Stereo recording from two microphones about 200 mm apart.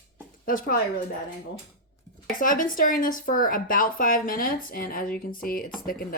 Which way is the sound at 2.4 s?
45° left (ahead or behind).